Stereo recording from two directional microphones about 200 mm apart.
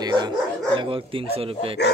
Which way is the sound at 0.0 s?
20° right (ahead or behind).